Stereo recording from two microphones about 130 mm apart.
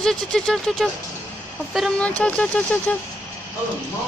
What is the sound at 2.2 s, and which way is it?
Speech, 10° left (ahead or behind).